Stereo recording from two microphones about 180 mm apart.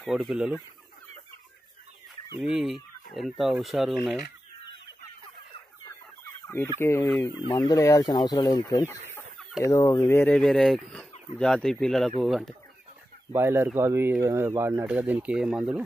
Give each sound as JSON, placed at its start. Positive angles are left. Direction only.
{"t": 0.0, "sound": "speech", "side_deg": 0}
{"t": 2.4, "sound": "speech", "side_deg": -5}
{"t": 5.9, "sound": "chicken", "side_deg": 15}
{"t": 6.8, "sound": "fowl", "side_deg": 15}
{"t": 7.2, "sound": "speech", "side_deg": 20}
{"t": 13.3, "sound": "speech", "side_deg": -15}